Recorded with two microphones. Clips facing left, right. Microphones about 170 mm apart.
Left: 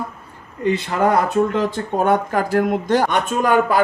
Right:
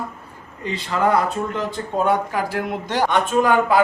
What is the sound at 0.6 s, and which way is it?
Speech, 55° left (ahead or behind).